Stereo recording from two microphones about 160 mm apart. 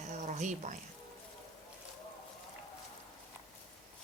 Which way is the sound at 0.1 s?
50° right (ahead or behind).